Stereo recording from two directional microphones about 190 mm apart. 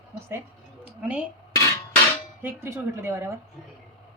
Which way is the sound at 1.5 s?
15° left (ahead or behind).